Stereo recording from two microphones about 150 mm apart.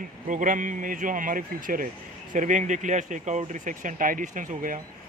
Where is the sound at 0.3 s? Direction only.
60° right (ahead or behind).